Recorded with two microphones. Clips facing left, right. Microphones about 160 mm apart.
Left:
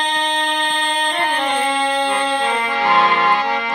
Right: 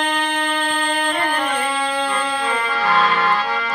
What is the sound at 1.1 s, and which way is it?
Music, 25° left (ahead or behind).